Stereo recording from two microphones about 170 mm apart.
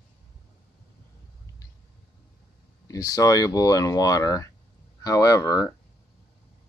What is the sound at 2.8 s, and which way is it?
Speech, 20° left (ahead or behind).